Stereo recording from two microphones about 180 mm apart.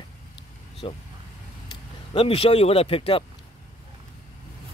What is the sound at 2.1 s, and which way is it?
Speech, 30° left (ahead or behind).